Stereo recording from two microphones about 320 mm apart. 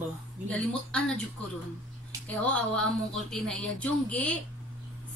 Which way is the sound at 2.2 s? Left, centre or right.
Centre.